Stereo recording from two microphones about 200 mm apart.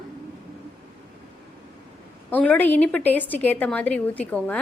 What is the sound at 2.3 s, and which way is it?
A woman's voice, 10° left (ahead or behind).